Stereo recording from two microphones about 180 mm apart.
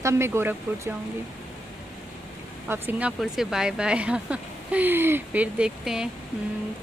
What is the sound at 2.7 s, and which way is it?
Speech, 10° right (ahead or behind).